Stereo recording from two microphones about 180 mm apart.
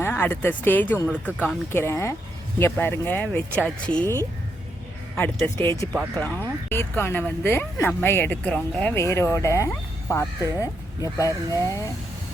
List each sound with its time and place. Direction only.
0.0 s speech: 10° left (ahead or behind)
5.1 s speech: 10° left (ahead or behind)